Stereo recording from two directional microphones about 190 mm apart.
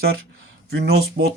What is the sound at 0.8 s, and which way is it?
Speech, 65° right (ahead or behind).